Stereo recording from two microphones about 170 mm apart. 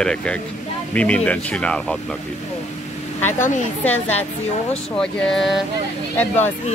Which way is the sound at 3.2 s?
10° left (ahead or behind).